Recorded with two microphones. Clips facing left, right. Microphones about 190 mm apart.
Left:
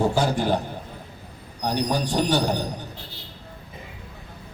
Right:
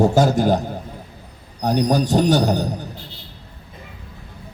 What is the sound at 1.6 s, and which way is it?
Speech, 45° right (ahead or behind).